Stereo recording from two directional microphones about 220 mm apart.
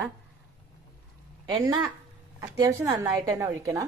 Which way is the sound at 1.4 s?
20° right (ahead or behind).